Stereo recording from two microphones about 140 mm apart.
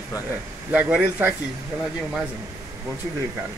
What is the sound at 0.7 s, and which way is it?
Speech, 10° right (ahead or behind).